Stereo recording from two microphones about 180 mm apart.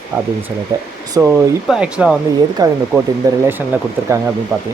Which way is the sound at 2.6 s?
20° right (ahead or behind).